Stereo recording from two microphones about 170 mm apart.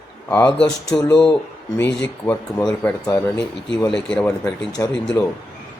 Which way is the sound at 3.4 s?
90° left.